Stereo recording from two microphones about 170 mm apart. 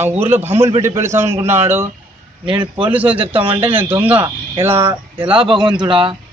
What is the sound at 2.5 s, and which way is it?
Speech, 30° right (ahead or behind).